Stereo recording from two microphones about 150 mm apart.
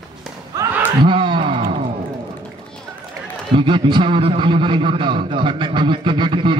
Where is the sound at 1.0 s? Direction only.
35° right (ahead or behind).